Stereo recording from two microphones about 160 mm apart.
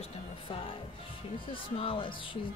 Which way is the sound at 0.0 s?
35° left (ahead or behind).